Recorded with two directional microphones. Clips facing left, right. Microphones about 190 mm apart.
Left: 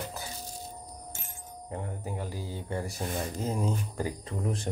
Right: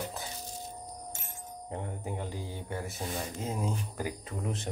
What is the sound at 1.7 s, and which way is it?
Speech, 20° right (ahead or behind).